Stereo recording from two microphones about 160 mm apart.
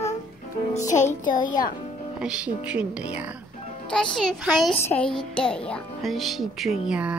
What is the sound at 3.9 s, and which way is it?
Speech, 5° left (ahead or behind).